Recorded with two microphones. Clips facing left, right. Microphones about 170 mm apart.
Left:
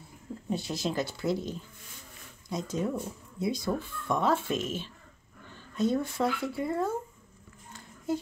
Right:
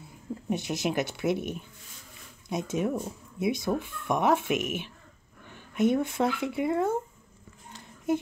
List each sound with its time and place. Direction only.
0.5 s speech: 20° right (ahead or behind)